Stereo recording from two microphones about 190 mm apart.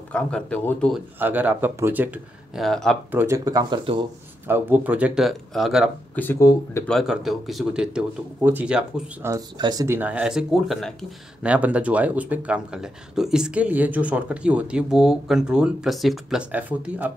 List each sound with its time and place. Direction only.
0.1 s speech: 5° left (ahead or behind)
1.2 s speech: 10° right (ahead or behind)
3.1 s speech: 10° right (ahead or behind)
4.5 s speech: 10° right (ahead or behind)
6.1 s speech: 10° left (ahead or behind)
6.9 s speech: centre (ahead or behind)
9.3 s speech: 20° right (ahead or behind)